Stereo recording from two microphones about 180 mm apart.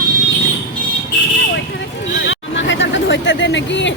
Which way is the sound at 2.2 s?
80° left.